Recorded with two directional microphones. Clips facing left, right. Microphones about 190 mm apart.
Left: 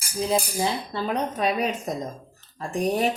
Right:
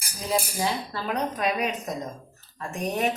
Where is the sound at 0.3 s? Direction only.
20° left (ahead or behind).